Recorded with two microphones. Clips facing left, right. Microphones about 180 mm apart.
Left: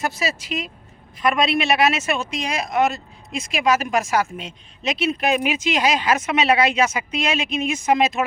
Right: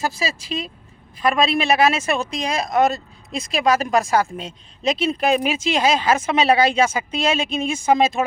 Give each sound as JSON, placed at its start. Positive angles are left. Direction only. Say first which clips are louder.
{"t": 0.0, "sound": "speech", "louder": "even", "side_deg": -30}